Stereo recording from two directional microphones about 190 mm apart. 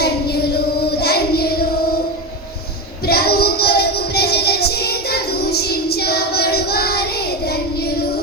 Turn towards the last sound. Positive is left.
turn(degrees=55)  # may be behind; listen again after turning